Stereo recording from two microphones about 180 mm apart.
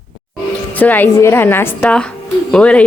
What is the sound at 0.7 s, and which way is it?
A woman's voice, 10° left (ahead or behind).